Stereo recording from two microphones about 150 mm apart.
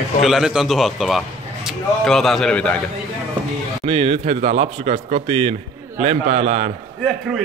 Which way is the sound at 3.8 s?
40° right (ahead or behind).